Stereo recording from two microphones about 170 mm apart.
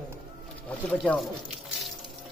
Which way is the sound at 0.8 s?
5° left (ahead or behind).